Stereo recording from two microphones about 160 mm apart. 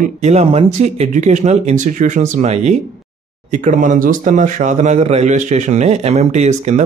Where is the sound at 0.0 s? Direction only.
45° right (ahead or behind).